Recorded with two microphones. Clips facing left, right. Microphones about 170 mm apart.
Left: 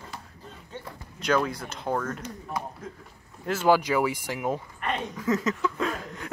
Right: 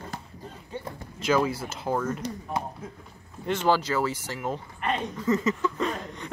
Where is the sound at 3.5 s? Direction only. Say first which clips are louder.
Left 2 dB; 10° left (ahead or behind).